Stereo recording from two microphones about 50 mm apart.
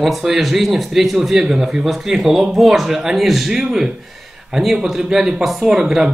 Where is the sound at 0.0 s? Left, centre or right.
Centre.